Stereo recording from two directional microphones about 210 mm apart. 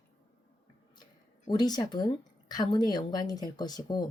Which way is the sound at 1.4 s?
20° left (ahead or behind).